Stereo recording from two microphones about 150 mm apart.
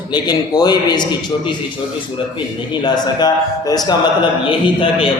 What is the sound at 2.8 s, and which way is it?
A man's voice, 25° left (ahead or behind).